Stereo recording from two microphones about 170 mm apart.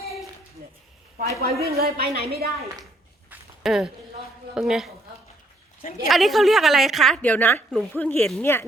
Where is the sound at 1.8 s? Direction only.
65° right (ahead or behind).